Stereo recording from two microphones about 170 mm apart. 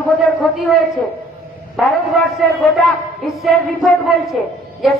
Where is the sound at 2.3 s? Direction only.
Centre (ahead or behind).